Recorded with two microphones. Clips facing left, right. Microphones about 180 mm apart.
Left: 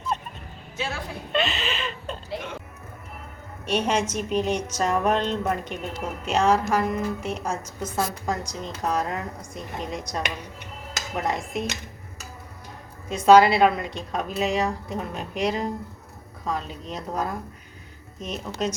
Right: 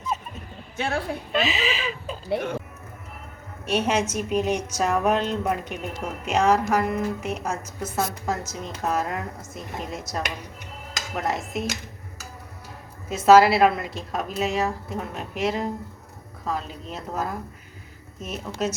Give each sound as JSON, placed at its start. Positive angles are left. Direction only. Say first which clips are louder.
{"t": 0.1, "sound": "a sound", "louder": "left 1 dB", "side_deg": -5}
{"t": 0.8, "sound": "a woman's voice", "louder": "right 5 dB", "side_deg": -55}
{"t": 1.3, "sound": "a woman's voice", "louder": "even", "side_deg": 0}
{"t": 3.7, "sound": "a woman's voice", "louder": "right 1 dB", "side_deg": -5}
{"t": 13.1, "sound": "a woman's voice", "louder": "even", "side_deg": -5}